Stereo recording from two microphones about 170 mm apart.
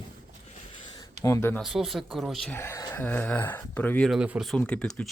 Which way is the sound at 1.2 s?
15° left (ahead or behind).